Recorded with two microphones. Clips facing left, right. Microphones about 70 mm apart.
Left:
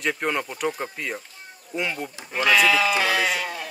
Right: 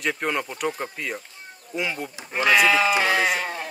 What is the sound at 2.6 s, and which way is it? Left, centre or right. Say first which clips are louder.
Sheep: right 1 dB; right.